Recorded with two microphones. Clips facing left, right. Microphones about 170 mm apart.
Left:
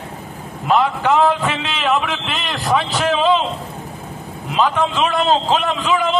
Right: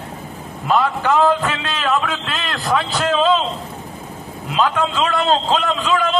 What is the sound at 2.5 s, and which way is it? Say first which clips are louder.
Speech: left 1 dB; centre (ahead or behind).